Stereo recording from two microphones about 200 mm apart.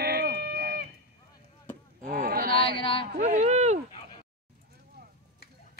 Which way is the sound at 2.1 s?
45° right (ahead or behind).